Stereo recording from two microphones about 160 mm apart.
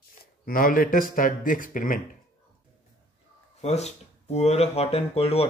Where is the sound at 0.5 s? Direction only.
60° left (ahead or behind).